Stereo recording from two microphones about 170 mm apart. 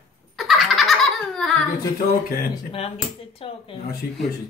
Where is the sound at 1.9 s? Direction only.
60° left (ahead or behind).